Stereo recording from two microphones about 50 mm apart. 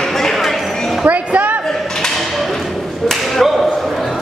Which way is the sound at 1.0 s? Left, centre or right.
Right.